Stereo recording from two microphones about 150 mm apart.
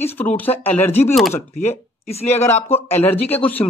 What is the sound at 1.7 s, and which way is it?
Speech, 45° left (ahead or behind).